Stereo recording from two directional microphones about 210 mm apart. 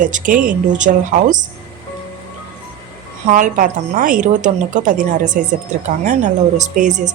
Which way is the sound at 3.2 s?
35° right (ahead or behind).